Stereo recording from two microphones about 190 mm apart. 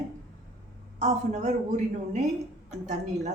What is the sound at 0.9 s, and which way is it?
Speech, 40° right (ahead or behind).